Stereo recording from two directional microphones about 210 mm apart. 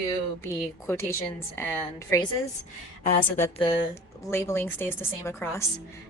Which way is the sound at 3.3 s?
30° left (ahead or behind).